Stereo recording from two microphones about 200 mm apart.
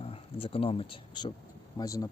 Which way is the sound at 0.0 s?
30° left (ahead or behind).